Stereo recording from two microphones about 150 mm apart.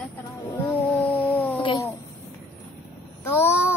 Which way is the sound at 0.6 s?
10° left (ahead or behind).